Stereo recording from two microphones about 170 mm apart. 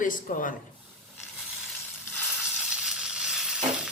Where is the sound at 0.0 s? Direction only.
50° left (ahead or behind).